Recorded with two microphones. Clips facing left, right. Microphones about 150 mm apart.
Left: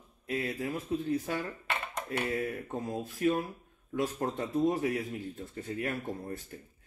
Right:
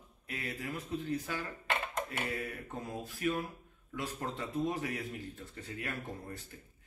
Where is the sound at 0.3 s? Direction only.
40° left (ahead or behind).